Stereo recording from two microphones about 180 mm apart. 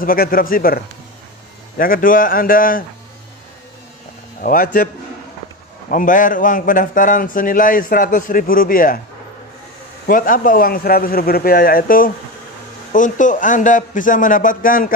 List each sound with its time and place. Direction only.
0.0 s speech: 55° left (ahead or behind)
1.8 s speech: 50° left (ahead or behind)
4.4 s speech: 50° left (ahead or behind)
5.9 s speech: 50° left (ahead or behind)
10.0 s speech: 50° left (ahead or behind)